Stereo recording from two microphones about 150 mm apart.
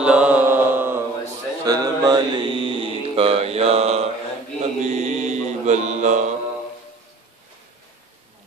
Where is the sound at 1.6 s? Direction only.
25° right (ahead or behind); by 6.3 s 50° right (ahead or behind).